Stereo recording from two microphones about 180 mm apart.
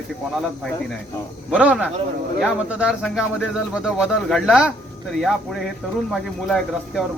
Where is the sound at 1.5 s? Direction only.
5° right (ahead or behind).